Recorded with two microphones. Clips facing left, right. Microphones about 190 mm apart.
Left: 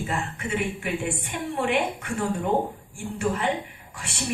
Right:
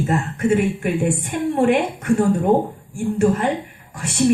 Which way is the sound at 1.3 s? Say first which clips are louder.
Right 9 dB; 45° right (ahead or behind).